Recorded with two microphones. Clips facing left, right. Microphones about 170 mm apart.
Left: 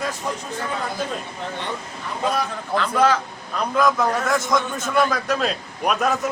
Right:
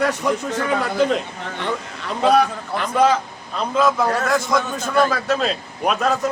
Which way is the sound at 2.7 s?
10° right (ahead or behind).